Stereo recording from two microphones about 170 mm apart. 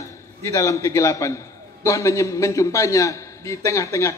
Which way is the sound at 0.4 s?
20° left (ahead or behind).